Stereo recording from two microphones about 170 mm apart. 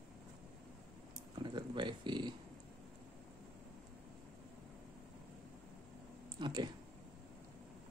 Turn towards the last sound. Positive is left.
turn(degrees=-25)  # may be behind; listen again after turning